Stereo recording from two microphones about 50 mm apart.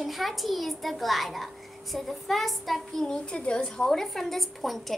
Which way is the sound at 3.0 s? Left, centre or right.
Centre.